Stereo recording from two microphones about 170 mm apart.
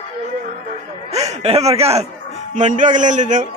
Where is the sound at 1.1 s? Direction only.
40° right (ahead or behind).